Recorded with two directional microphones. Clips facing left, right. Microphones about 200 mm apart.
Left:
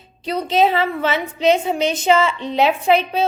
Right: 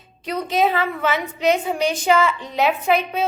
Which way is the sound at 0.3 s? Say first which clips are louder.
Left 3 dB; 30° left (ahead or behind).